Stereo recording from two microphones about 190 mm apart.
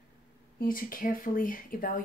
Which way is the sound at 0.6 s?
50° left (ahead or behind).